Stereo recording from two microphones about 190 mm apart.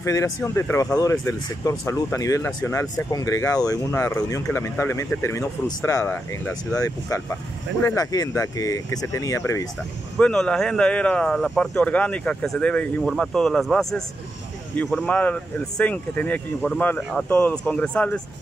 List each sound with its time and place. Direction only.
0.0 s speech: 15° left (ahead or behind)
10.1 s speech: 5° left (ahead or behind)